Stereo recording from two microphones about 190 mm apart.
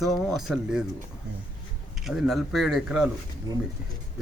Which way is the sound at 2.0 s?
Centre (ahead or behind).